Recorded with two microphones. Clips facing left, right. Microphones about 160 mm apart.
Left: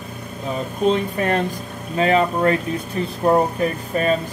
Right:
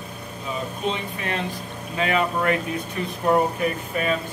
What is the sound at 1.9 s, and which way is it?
Speech, 35° left (ahead or behind).